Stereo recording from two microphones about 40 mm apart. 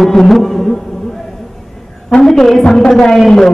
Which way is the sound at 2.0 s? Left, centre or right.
Centre.